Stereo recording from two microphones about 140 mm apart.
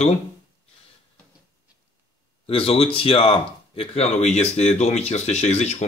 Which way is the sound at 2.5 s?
45° left (ahead or behind).